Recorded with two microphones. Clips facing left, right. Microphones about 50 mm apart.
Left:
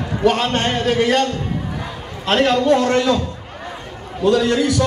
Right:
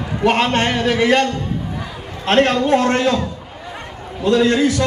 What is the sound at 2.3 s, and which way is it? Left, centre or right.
A man's voice, right.